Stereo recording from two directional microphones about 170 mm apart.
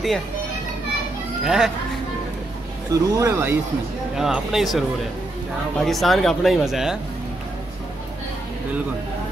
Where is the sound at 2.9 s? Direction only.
20° right (ahead or behind).